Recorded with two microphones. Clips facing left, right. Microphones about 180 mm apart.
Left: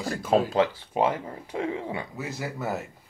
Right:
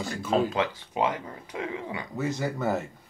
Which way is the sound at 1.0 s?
30° left (ahead or behind).